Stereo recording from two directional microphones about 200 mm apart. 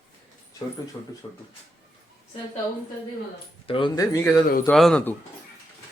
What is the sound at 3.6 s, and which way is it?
Speech, 25° left (ahead or behind).